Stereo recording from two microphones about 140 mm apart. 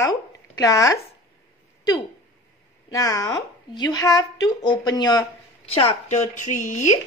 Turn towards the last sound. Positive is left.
turn(degrees=60)  # may be behind; listen again after turning